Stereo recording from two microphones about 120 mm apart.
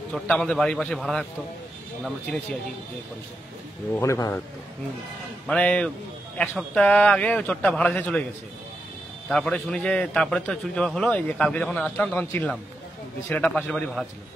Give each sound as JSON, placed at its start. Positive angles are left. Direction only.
{"t": 0.3, "sound": "a man's voice", "side_deg": 5}
{"t": 3.9, "sound": "a man's voice", "side_deg": 25}
{"t": 5.5, "sound": "a man's voice", "side_deg": 10}
{"t": 9.3, "sound": "a man's voice", "side_deg": 5}
{"t": 13.6, "sound": "a man's voice", "side_deg": 10}